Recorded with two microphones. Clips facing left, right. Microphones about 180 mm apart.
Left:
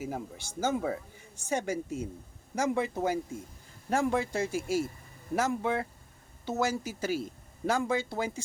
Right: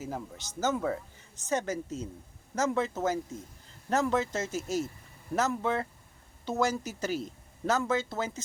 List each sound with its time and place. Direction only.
0.0 s speech: 10° left (ahead or behind)